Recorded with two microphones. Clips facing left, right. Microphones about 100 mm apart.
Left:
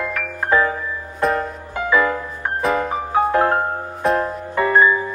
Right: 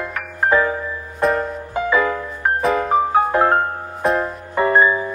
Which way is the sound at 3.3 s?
20° right (ahead or behind).